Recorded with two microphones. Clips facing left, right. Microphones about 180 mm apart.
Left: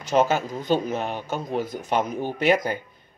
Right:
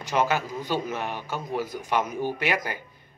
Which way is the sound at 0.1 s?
35° left (ahead or behind).